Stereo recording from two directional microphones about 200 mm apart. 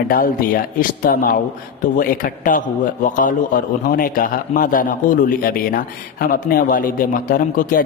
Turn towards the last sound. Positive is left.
turn(degrees=45)  # may be behind; listen again after turning